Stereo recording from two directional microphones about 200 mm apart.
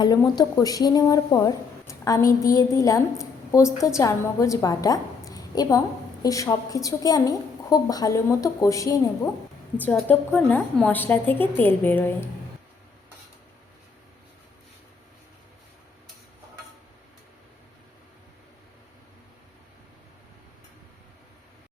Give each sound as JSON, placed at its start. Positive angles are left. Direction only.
{"t": 0.0, "sound": "a woman's voice", "side_deg": 20}